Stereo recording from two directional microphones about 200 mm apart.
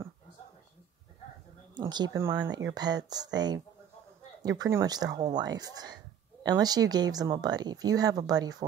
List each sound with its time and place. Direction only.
1.8 s speech: 20° right (ahead or behind)